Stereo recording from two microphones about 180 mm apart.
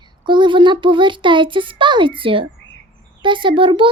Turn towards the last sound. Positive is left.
turn(degrees=-30)  # may be behind; listen again after turning